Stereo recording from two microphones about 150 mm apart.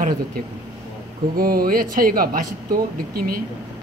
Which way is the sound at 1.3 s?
80° right.